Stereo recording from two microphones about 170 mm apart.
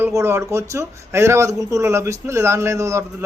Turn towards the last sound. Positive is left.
turn(degrees=-15)  # may be behind; listen again after turning